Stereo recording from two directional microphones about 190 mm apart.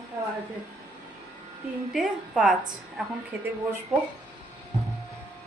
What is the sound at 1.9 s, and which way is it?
A woman's voice, centre (ahead or behind).